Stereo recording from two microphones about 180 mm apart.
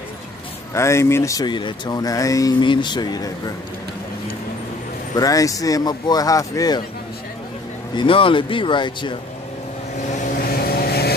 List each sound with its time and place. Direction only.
0.7 s speech: 15° left (ahead or behind)
5.1 s speech: 20° left (ahead or behind)
8.0 s speech: 30° left (ahead or behind)
10.2 s vehicle: 55° left (ahead or behind)